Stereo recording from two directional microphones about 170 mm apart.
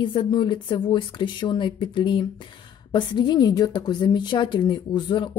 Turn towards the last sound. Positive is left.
turn(degrees=25)  # may be behind; listen again after turning